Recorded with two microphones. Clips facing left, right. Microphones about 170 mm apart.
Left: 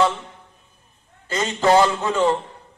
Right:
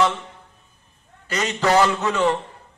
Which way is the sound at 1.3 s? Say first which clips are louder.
Left 2 dB; 25° left (ahead or behind).